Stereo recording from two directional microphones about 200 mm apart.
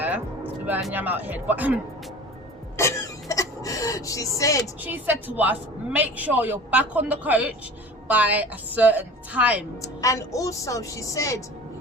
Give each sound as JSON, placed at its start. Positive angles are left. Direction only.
{"t": 0.0, "sound": "speech", "side_deg": -10}
{"t": 2.7, "sound": "a sound", "side_deg": 15}
{"t": 4.6, "sound": "speech", "side_deg": -10}
{"t": 9.8, "sound": "a woman's voice", "side_deg": 15}